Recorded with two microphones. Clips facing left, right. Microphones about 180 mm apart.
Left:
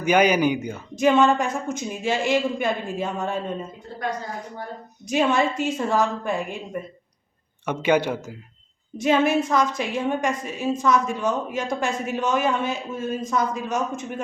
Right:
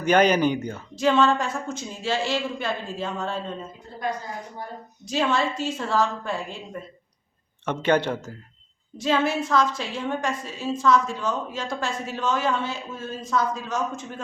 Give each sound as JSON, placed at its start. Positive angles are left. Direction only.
{"t": 0.0, "sound": "a woman's voice", "side_deg": 10}
{"t": 5.0, "sound": "a woman's voice", "side_deg": 15}